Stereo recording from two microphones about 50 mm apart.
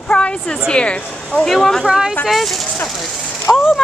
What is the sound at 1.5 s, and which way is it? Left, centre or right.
Speech, centre.